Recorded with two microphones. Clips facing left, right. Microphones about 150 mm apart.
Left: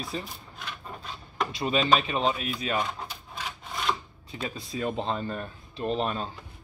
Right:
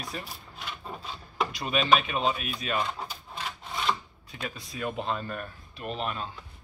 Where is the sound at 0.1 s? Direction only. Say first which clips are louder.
Left 5 dB; 25° left (ahead or behind).